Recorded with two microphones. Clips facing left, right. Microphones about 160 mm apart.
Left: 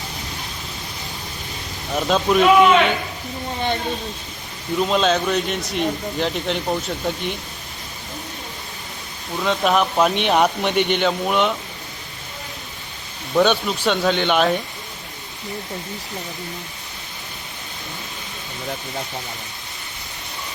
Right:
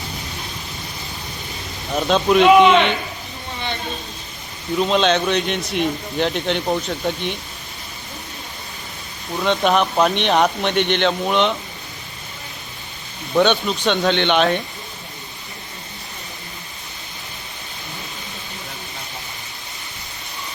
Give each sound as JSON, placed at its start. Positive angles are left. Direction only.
{"t": 1.9, "sound": "speech", "side_deg": 0}
{"t": 4.8, "sound": "speech", "side_deg": 5}
{"t": 9.4, "sound": "speech", "side_deg": 0}
{"t": 13.3, "sound": "speech", "side_deg": 5}